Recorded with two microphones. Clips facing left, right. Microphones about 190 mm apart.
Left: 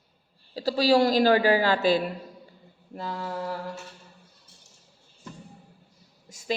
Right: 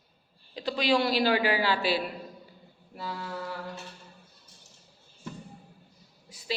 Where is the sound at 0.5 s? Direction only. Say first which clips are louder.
Left 5 dB; 40° left (ahead or behind).